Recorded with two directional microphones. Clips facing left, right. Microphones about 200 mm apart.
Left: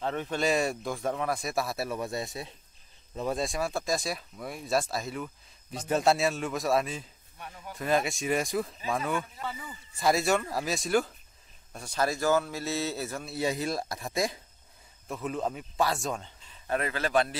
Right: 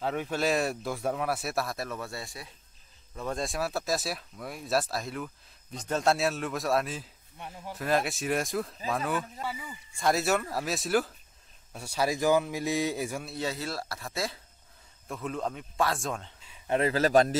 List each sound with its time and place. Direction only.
0.0 s speech: 5° right (ahead or behind); by 2.5 s 20° left (ahead or behind)
3.3 s speech: centre (ahead or behind)
7.3 s speech: 25° right (ahead or behind)
7.7 s speech: centre (ahead or behind)
9.9 s a man's voice: centre (ahead or behind)
13.4 s speech: 15° left (ahead or behind)
15.0 s speech: centre (ahead or behind)
16.6 s speech: 25° right (ahead or behind)
16.9 s speech: 40° right (ahead or behind)